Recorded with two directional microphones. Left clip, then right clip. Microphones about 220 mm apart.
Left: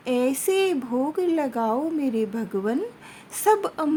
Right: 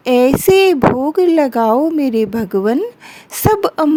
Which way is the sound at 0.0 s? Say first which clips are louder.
Right 12 dB; 45° right (ahead or behind).